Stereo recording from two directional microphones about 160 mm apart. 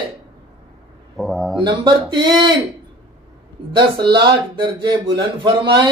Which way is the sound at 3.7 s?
30° right (ahead or behind).